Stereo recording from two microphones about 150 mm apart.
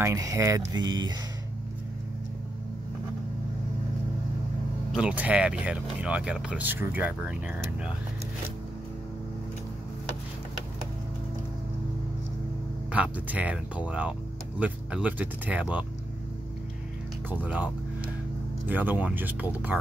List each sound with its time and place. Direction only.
0.0 s speech: 20° right (ahead or behind)
4.9 s speech: 10° right (ahead or behind)
12.9 s speech: 10° right (ahead or behind)
17.3 s speech: 10° right (ahead or behind)
18.7 s speech: 10° right (ahead or behind)